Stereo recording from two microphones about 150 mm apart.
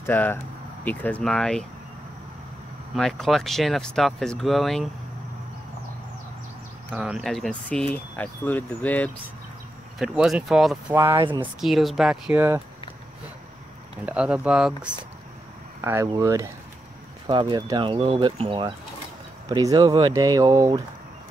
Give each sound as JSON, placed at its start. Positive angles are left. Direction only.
{"t": 0.0, "sound": "speech", "side_deg": 15}
{"t": 2.9, "sound": "speech", "side_deg": 0}
{"t": 6.9, "sound": "speech", "side_deg": -5}
{"t": 9.9, "sound": "speech", "side_deg": -5}
{"t": 12.3, "sound": "speech", "side_deg": -15}
{"t": 14.0, "sound": "speech", "side_deg": -5}
{"t": 15.8, "sound": "speech", "side_deg": -20}